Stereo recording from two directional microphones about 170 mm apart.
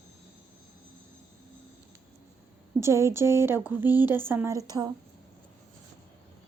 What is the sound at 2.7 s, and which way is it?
A woman's voice, 15° right (ahead or behind).